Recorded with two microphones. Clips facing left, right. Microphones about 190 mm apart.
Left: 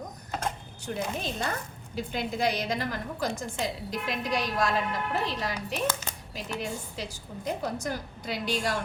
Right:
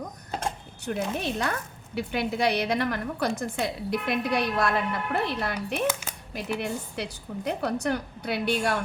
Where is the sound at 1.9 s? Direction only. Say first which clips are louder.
Right 4 dB; 65° right (ahead or behind).